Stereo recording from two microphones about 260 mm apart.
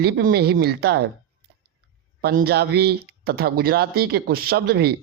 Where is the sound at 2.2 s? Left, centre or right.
Right.